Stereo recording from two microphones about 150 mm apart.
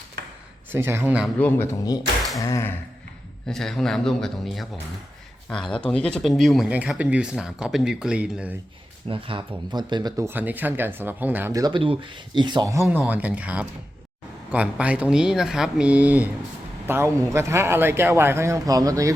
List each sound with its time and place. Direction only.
0.7 s speech: 15° right (ahead or behind)
1.4 s speech: 15° left (ahead or behind)
3.4 s speech: 5° left (ahead or behind)
9.0 s speech: 35° right (ahead or behind)
10.2 s speech: 10° right (ahead or behind)
11.5 s a man's voice: 30° right (ahead or behind)